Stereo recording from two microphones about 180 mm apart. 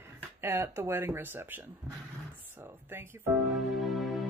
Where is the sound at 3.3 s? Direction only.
Centre (ahead or behind).